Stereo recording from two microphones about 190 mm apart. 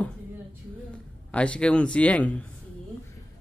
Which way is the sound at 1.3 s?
5° left (ahead or behind).